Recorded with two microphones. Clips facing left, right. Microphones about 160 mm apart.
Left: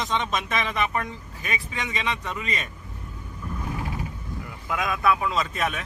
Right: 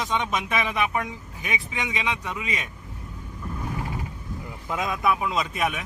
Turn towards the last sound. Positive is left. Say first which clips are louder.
# right 1 dB
turn(degrees=-10)  # may be behind; listen again after turning